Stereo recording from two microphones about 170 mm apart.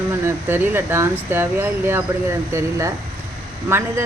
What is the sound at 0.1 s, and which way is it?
A woman's voice, 15° right (ahead or behind).